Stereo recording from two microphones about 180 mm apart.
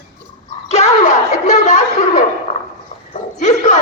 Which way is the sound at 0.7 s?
40° left (ahead or behind).